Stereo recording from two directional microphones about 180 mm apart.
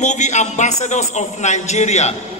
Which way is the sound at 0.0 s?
40° left (ahead or behind).